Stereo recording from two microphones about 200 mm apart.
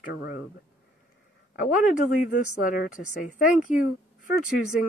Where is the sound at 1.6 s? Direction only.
40° left (ahead or behind).